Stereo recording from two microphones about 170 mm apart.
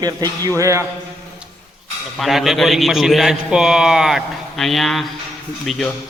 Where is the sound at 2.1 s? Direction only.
Centre (ahead or behind).